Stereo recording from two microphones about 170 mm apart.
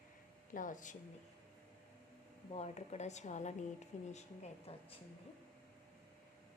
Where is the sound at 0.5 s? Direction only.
50° left (ahead or behind).